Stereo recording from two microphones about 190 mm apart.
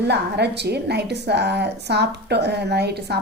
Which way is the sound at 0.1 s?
60° right (ahead or behind).